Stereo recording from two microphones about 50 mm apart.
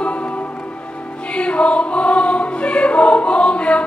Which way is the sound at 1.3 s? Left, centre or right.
Left.